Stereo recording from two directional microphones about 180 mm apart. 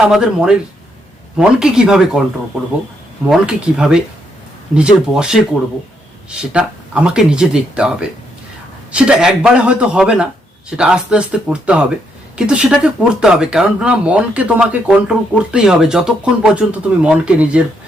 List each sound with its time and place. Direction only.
0.0 s speech: 5° right (ahead or behind)
3.2 s speech: 5° right (ahead or behind)
6.5 s speech: 5° right (ahead or behind)